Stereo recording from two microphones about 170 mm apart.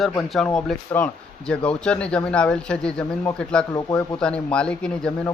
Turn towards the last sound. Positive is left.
turn(degrees=5)  # may be behind; listen again after turning